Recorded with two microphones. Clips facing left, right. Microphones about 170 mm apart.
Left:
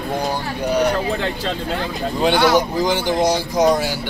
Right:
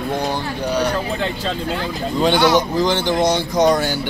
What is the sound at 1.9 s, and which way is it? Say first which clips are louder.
Speech: right 1 dB; 5° left (ahead or behind).